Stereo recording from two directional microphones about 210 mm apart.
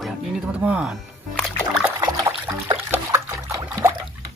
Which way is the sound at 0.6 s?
5° right (ahead or behind).